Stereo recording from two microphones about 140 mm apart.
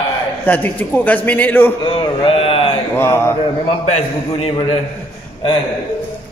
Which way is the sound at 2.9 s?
15° left (ahead or behind).